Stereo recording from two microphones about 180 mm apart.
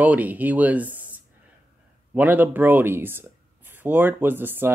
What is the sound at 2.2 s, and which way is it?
Speech, 10° right (ahead or behind).